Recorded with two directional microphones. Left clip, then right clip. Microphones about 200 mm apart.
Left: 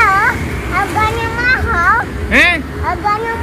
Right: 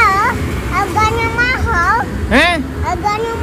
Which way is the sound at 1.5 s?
5° right (ahead or behind).